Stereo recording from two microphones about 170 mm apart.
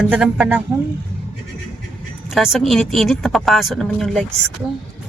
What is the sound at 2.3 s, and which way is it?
Speech, centre (ahead or behind).